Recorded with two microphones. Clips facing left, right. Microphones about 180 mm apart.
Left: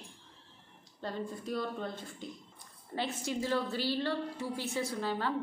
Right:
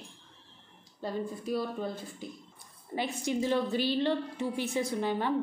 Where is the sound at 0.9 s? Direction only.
10° right (ahead or behind).